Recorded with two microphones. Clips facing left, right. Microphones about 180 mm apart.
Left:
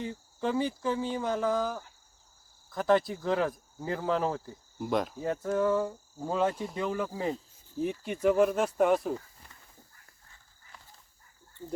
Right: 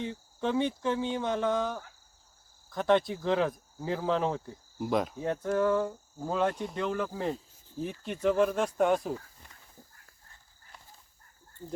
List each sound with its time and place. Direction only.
0.0 s speech: 5° left (ahead or behind)